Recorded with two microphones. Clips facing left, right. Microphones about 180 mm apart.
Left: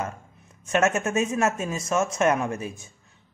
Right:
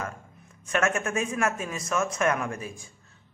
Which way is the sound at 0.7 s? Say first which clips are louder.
Left 4 dB; 25° left (ahead or behind).